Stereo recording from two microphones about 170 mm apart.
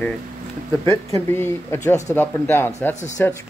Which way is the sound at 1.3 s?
15° left (ahead or behind).